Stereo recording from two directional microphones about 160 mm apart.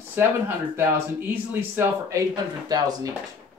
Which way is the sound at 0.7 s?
15° right (ahead or behind).